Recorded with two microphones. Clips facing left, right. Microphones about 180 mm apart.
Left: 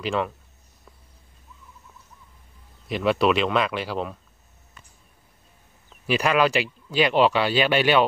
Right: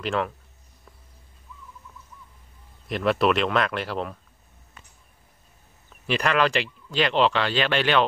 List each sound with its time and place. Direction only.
0.0 s speech: centre (ahead or behind)
2.9 s speech: centre (ahead or behind)
6.0 s speech: 5° left (ahead or behind)